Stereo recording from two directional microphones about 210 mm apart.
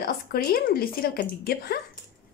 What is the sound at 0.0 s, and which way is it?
Speech, 45° left (ahead or behind).